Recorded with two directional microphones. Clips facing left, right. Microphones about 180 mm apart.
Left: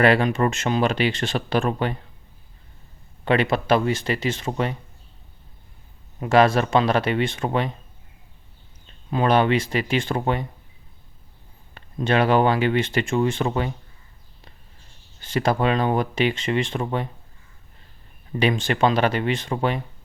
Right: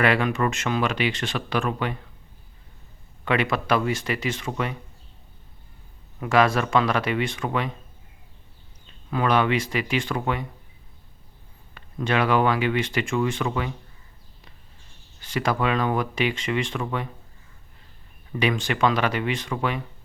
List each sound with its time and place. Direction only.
0.0 s speech: 30° left (ahead or behind)
3.2 s speech: 30° left (ahead or behind)
6.1 s speech: 25° left (ahead or behind)
9.0 s speech: 25° left (ahead or behind)
11.7 s speech: 30° left (ahead or behind)
15.2 s speech: 25° left (ahead or behind)
18.3 s speech: 25° left (ahead or behind)